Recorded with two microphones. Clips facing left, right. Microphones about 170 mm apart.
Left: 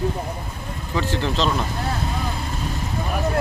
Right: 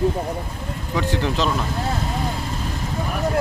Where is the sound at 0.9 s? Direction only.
15° right (ahead or behind).